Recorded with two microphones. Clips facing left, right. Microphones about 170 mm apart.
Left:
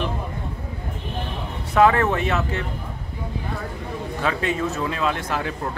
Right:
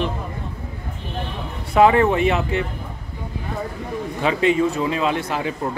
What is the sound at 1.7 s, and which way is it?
Speech, 10° right (ahead or behind).